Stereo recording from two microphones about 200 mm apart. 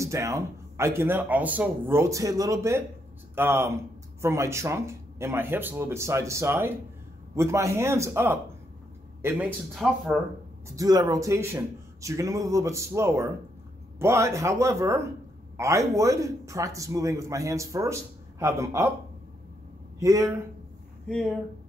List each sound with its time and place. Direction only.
0.0 s speech: 15° right (ahead or behind)
10.8 s speech: 20° right (ahead or behind)
20.0 s speech: 15° right (ahead or behind)